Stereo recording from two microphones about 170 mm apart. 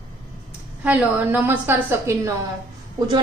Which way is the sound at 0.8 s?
10° right (ahead or behind).